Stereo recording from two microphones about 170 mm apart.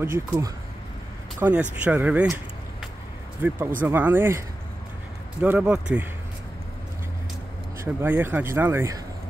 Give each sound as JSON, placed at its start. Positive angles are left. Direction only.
{"t": 0.0, "sound": "speech", "side_deg": -15}
{"t": 5.4, "sound": "speech", "side_deg": -5}
{"t": 7.8, "sound": "speech", "side_deg": -15}